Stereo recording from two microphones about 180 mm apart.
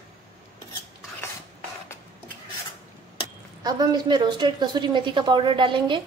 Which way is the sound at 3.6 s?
25° right (ahead or behind).